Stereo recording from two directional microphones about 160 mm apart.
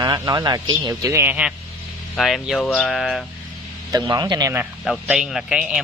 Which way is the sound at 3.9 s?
25° right (ahead or behind).